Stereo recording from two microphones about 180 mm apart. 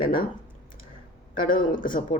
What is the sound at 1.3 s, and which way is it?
Speech, 50° left (ahead or behind).